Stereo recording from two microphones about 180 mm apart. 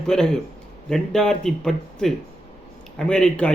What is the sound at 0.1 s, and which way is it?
A man's voice, 5° left (ahead or behind).